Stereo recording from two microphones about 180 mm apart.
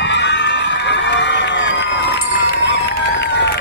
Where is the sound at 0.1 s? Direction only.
75° left (ahead or behind).